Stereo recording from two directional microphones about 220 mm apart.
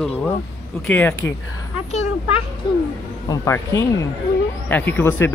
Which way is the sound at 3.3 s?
15° left (ahead or behind).